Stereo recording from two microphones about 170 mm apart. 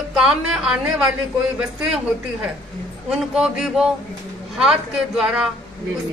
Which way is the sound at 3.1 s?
5° right (ahead or behind).